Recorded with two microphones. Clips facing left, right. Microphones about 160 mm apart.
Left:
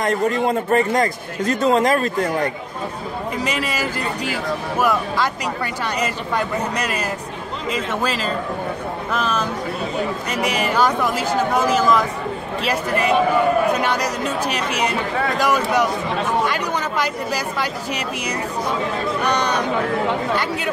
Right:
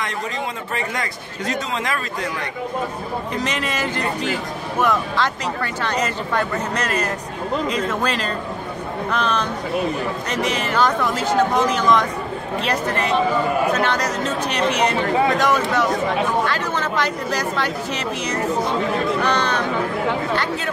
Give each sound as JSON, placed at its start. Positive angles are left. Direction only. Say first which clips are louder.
{"t": 0.0, "sound": "a man's voice", "louder": "left 8 dB", "side_deg": 50}
{"t": 3.3, "sound": "speech", "louder": "left 1 dB", "side_deg": 5}
{"t": 19.2, "sound": "speech", "louder": "even", "side_deg": 15}